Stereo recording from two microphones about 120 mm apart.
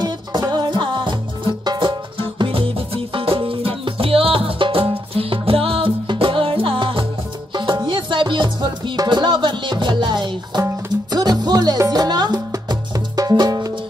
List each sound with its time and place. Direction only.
0.0 s music: 35° right (ahead or behind)